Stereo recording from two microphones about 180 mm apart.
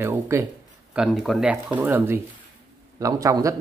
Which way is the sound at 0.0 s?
15° right (ahead or behind).